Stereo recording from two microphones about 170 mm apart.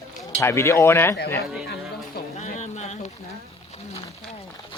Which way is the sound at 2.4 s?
45° left (ahead or behind).